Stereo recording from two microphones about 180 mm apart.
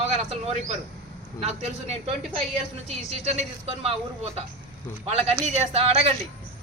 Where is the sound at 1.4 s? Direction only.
35° right (ahead or behind).